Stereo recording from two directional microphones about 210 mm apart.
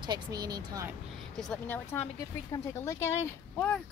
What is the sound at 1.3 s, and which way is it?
Speech, 5° left (ahead or behind).